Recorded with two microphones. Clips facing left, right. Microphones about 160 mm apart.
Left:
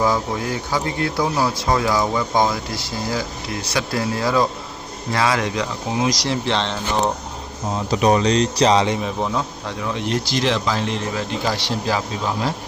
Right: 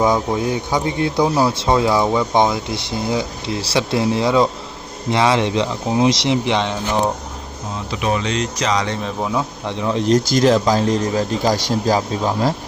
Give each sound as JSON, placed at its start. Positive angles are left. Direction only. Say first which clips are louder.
{"t": 0.0, "sound": "speech", "louder": "right 3 dB", "side_deg": -20}
{"t": 7.9, "sound": "speech", "louder": "left 4 dB", "side_deg": 40}
{"t": 9.9, "sound": "a man's voice", "louder": "right 8 dB", "side_deg": -35}